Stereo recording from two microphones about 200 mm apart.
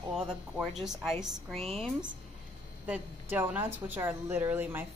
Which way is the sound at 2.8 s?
10° right (ahead or behind).